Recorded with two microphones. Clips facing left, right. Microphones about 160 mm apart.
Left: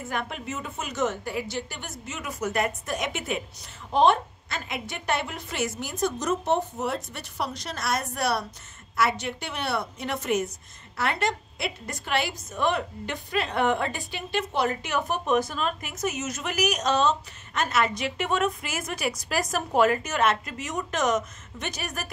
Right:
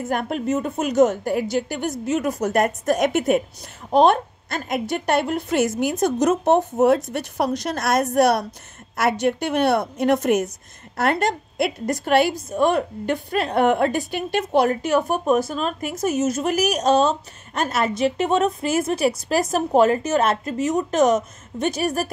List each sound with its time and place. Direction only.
0.0 s a woman's voice: 45° right (ahead or behind)
15.9 s a woman's voice: 50° right (ahead or behind)
16.3 s speech: 30° right (ahead or behind)